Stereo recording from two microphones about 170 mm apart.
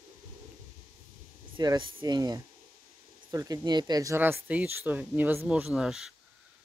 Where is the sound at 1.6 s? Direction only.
25° right (ahead or behind).